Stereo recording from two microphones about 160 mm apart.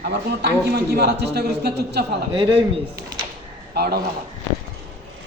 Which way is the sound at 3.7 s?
85° right.